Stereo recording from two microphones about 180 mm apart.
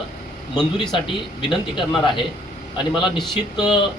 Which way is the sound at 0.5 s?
25° left (ahead or behind).